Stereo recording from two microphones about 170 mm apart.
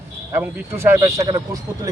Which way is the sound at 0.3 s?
15° right (ahead or behind).